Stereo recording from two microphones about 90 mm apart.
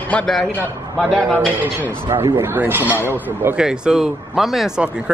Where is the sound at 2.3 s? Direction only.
25° right (ahead or behind).